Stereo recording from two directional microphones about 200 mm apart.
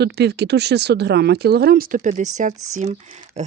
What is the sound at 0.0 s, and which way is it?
Speech, 55° right (ahead or behind).